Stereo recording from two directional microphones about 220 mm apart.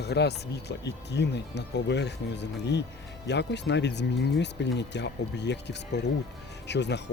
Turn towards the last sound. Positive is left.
turn(degrees=50)  # may be behind; listen again after turning